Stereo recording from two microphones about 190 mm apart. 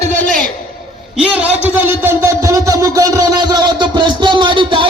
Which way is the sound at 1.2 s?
5° right (ahead or behind).